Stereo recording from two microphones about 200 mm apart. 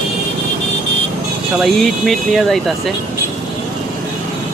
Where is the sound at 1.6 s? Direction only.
Centre (ahead or behind).